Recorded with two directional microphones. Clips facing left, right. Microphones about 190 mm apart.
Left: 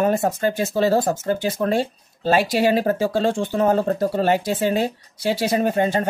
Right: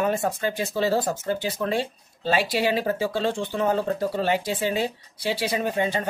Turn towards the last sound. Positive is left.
turn(degrees=45)  # may be behind; listen again after turning